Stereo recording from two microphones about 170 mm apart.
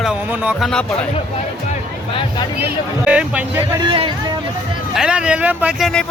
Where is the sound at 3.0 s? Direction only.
5° right (ahead or behind).